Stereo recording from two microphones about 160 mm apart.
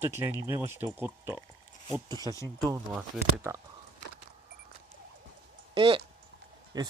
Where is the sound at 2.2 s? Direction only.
20° left (ahead or behind).